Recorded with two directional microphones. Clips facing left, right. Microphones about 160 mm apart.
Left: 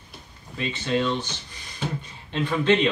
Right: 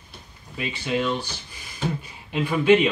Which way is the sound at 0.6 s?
10° right (ahead or behind).